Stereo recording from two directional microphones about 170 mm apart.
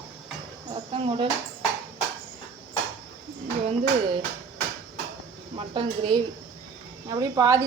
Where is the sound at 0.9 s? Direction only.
30° right (ahead or behind).